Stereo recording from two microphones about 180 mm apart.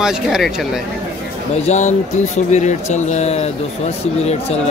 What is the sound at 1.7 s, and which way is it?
Speech, 40° left (ahead or behind).